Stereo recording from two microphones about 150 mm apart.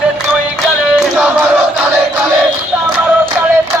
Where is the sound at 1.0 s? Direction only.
5° right (ahead or behind).